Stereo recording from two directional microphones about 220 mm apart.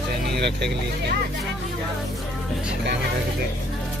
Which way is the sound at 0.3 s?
50° right (ahead or behind).